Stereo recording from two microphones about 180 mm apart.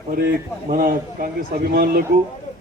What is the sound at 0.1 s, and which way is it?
A man's voice, 55° right (ahead or behind).